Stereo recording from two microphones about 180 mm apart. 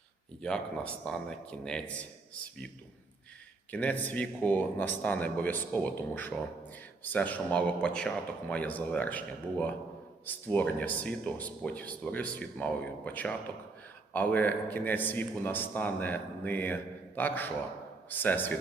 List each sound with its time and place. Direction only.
0.4 s a man's voice: 5° left (ahead or behind)
3.7 s speech: 10° left (ahead or behind)